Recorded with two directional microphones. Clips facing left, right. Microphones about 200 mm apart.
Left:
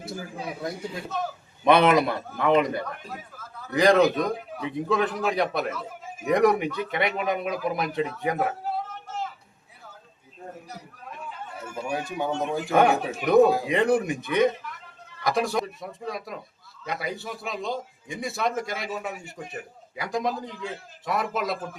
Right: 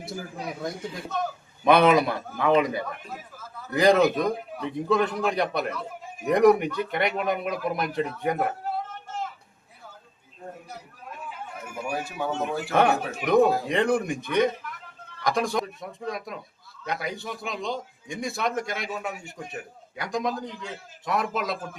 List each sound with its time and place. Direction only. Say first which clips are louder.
0.4 s a man's voice: even; 5° left (ahead or behind)
10.7 s a sound: even; centre (ahead or behind)
12.3 s a man's voice: left 2 dB; centre (ahead or behind)